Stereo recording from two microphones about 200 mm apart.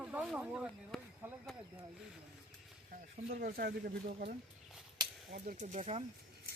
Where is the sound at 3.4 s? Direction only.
50° right (ahead or behind).